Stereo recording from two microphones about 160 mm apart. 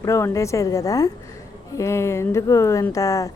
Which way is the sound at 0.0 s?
20° left (ahead or behind).